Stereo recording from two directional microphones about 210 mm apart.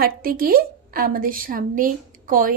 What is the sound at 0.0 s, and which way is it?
A woman's voice, 45° right (ahead or behind).